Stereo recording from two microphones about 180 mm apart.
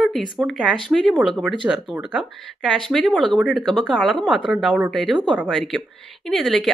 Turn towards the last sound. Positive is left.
turn(degrees=0)  # may be behind; listen again after turning